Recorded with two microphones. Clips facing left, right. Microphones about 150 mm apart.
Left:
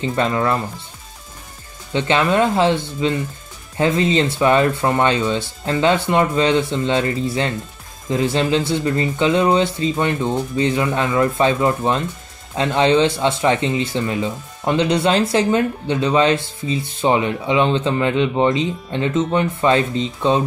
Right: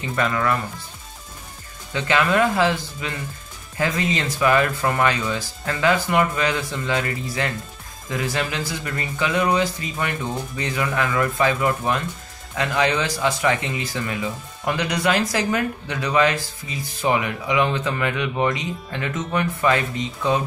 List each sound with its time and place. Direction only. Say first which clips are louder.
0.0 s speech: left 4 dB; 30° left (ahead or behind)
2.0 s speech: left 3 dB; 25° left (ahead or behind)